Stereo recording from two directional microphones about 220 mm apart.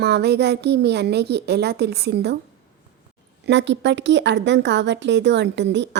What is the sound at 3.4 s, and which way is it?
Speech, 55° right (ahead or behind).